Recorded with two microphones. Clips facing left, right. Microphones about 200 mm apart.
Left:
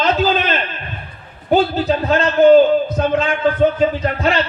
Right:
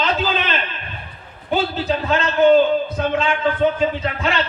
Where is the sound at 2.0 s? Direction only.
40° left (ahead or behind).